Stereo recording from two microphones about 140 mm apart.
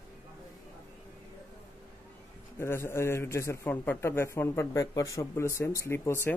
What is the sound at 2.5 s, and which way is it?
A man's voice, 20° left (ahead or behind).